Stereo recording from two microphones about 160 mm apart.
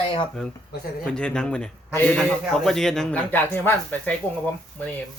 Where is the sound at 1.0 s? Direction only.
5° left (ahead or behind).